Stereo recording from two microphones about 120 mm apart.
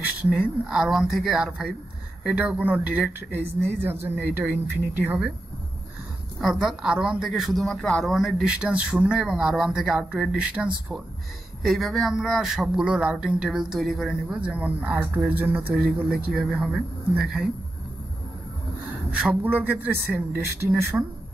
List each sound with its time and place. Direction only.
0.0 s a sound: 10° right (ahead or behind)
0.7 s a man's voice: 5° right (ahead or behind)
6.4 s a man's voice: 5° right (ahead or behind)
16.3 s a man's voice: 5° right (ahead or behind)
19.1 s speech: 10° right (ahead or behind)